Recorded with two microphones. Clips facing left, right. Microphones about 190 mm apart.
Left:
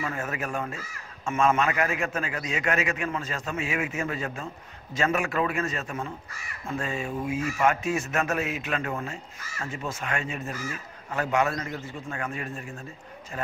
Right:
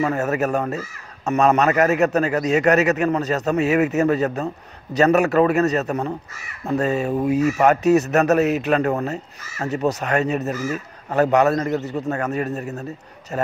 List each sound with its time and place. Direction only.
0.0 s a man's voice: 40° right (ahead or behind)